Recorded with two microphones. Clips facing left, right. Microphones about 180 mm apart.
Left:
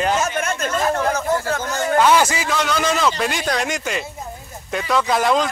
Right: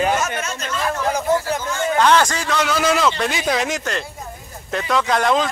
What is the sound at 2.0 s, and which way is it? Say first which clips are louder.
Speech: even; 5° left (ahead or behind).